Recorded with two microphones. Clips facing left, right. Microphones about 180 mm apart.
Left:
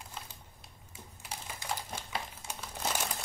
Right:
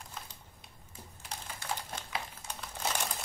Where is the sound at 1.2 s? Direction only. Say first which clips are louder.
Left 1 dB; 10° left (ahead or behind).